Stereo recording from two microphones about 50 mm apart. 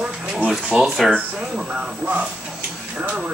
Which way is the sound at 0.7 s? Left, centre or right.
Centre.